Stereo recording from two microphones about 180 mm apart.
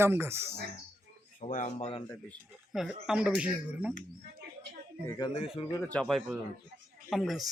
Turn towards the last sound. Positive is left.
turn(degrees=0)  # may be behind; listen again after turning